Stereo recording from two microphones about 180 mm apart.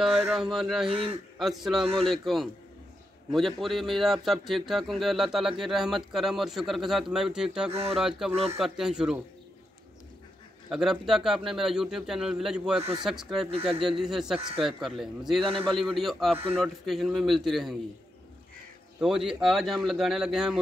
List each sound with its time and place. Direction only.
0.0 s speech: centre (ahead or behind)
0.8 s speech: 30° right (ahead or behind)
1.4 s speech: centre (ahead or behind)
10.7 s speech: centre (ahead or behind)
18.9 s speech: 5° right (ahead or behind)